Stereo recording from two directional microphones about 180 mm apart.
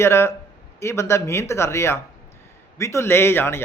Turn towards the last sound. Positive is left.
turn(degrees=15)  # may be behind; listen again after turning